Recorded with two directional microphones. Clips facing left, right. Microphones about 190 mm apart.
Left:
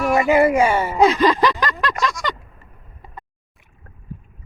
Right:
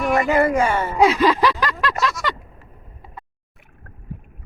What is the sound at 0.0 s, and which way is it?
Speech, 10° left (ahead or behind).